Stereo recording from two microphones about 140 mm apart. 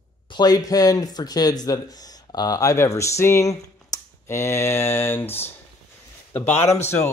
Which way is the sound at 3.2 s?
20° left (ahead or behind).